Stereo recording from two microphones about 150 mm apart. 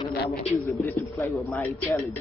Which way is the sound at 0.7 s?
15° left (ahead or behind).